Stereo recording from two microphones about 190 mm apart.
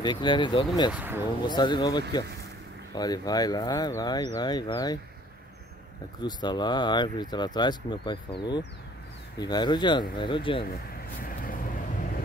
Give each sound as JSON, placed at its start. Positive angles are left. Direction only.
{"t": 0.0, "sound": "speech", "side_deg": 25}
{"t": 0.9, "sound": "speech", "side_deg": -10}
{"t": 1.5, "sound": "speech", "side_deg": 25}
{"t": 6.2, "sound": "speech", "side_deg": 20}
{"t": 10.6, "sound": "vehicle", "side_deg": 50}